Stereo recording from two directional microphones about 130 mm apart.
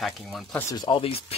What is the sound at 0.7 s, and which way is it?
Speech, 35° left (ahead or behind).